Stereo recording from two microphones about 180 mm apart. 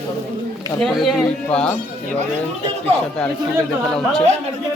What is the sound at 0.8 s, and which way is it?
Speech, centre (ahead or behind).